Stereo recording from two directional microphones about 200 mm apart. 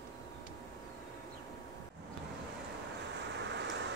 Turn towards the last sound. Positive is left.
turn(degrees=-60)  # may be behind; listen again after turning